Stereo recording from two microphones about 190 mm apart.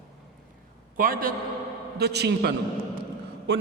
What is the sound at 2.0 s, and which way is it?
Speech, 60° right (ahead or behind).